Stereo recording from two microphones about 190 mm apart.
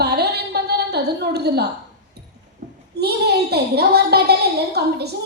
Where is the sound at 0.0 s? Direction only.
60° right (ahead or behind).